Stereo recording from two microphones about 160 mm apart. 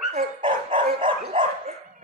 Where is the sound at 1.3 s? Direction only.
40° right (ahead or behind).